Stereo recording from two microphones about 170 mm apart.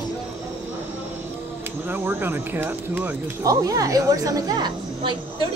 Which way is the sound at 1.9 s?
10° right (ahead or behind).